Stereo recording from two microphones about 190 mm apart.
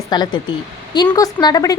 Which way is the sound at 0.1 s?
20° left (ahead or behind).